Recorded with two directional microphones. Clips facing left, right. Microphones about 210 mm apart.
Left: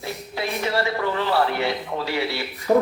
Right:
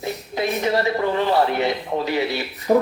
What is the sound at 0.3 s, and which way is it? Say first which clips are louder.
A man's voice: right 3 dB; 20° right (ahead or behind).